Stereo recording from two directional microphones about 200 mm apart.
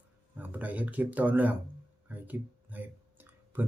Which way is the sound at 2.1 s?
10° right (ahead or behind).